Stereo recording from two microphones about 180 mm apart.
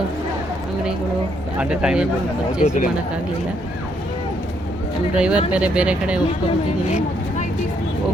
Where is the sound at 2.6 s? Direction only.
45° left (ahead or behind).